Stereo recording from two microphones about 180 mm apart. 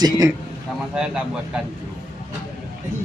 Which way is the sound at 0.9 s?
5° right (ahead or behind).